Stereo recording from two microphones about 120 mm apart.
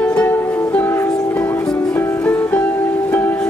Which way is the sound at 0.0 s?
15° left (ahead or behind).